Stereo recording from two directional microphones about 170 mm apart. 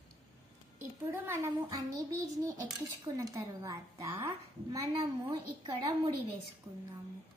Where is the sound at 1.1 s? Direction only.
15° right (ahead or behind).